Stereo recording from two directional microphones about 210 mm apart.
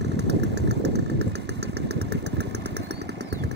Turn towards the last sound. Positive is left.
turn(degrees=-50)  # may be behind; listen again after turning